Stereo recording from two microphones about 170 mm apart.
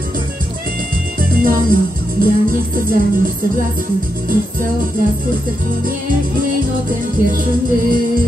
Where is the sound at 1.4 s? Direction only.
55° right (ahead or behind).